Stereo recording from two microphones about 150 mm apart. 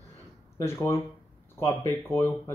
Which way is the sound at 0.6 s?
15° left (ahead or behind).